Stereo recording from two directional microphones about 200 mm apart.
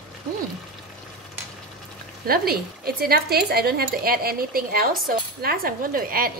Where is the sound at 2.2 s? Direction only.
50° right (ahead or behind).